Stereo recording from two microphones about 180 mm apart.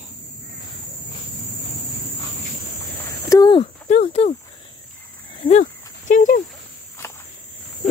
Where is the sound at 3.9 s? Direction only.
35° left (ahead or behind).